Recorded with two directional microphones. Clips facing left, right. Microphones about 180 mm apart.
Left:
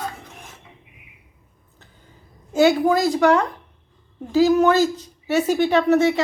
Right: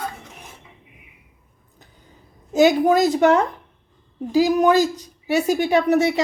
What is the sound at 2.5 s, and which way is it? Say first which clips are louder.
A woman's voice: right 1 dB; 20° right (ahead or behind).